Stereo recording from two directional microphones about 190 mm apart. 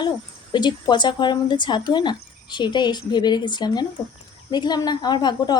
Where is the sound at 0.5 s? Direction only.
25° left (ahead or behind).